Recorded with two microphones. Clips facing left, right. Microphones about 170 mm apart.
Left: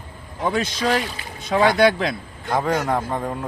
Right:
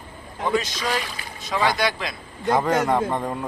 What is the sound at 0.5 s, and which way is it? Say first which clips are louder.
Speech: left 3 dB; 55° left (ahead or behind).